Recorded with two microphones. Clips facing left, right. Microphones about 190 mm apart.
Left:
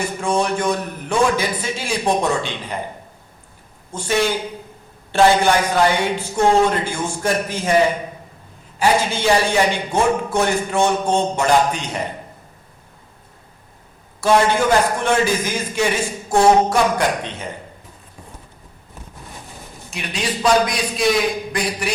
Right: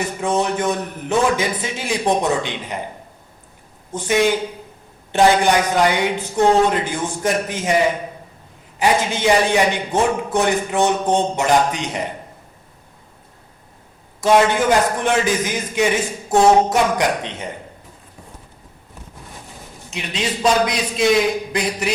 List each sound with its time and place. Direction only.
0.2 s a man's voice: 20° right (ahead or behind)
3.9 s a man's voice: 20° right (ahead or behind)
8.8 s a man's voice: 20° right (ahead or behind)
14.2 s a man's voice: 20° right (ahead or behind)
19.9 s a man's voice: 25° right (ahead or behind)